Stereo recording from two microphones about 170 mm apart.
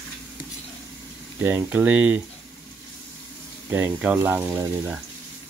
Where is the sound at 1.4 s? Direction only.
10° right (ahead or behind).